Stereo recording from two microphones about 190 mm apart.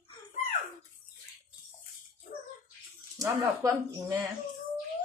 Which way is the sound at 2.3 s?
50° left (ahead or behind).